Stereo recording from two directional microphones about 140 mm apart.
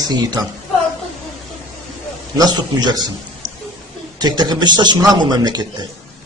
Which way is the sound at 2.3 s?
25° right (ahead or behind).